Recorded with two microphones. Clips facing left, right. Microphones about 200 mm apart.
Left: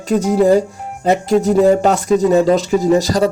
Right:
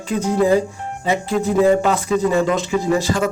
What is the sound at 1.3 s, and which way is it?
Speech, 40° left (ahead or behind).